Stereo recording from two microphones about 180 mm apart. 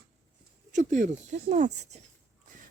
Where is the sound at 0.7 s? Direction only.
40° right (ahead or behind).